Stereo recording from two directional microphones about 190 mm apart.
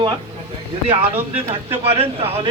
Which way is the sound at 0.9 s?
30° right (ahead or behind).